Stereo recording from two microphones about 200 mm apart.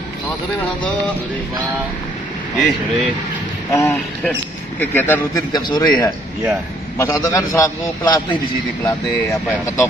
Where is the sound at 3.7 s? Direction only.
15° left (ahead or behind).